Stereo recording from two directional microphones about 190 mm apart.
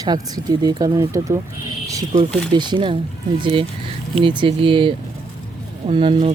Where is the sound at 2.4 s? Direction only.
25° right (ahead or behind).